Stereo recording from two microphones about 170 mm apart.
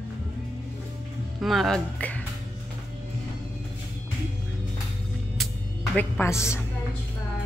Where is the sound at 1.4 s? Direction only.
Centre (ahead or behind).